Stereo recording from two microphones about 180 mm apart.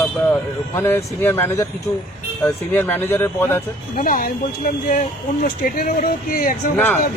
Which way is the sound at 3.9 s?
50° left (ahead or behind).